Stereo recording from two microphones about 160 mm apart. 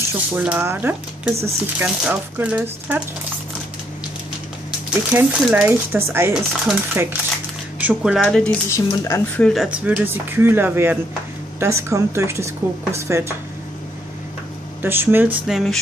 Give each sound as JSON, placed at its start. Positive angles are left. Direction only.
{"t": 0.4, "sound": "speech", "side_deg": -15}
{"t": 5.1, "sound": "speech", "side_deg": -15}
{"t": 8.6, "sound": "speech", "side_deg": 20}
{"t": 9.4, "sound": "speech", "side_deg": 0}
{"t": 14.8, "sound": "speech", "side_deg": -15}
{"t": 15.4, "sound": "speech", "side_deg": 0}